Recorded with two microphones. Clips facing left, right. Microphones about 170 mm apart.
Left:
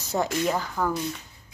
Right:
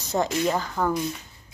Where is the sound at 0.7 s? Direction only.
15° right (ahead or behind).